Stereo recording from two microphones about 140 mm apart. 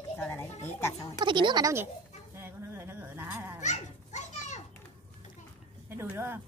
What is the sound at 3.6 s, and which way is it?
Dog, 55° left (ahead or behind).